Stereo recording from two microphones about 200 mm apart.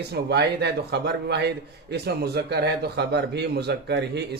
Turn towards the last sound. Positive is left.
turn(degrees=-55)  # may be behind; listen again after turning